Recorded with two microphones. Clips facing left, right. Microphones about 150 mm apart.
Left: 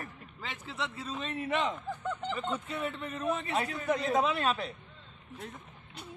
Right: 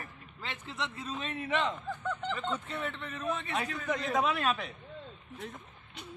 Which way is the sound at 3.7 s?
5° left (ahead or behind).